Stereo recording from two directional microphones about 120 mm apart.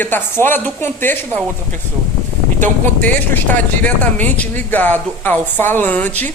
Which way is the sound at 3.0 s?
15° left (ahead or behind).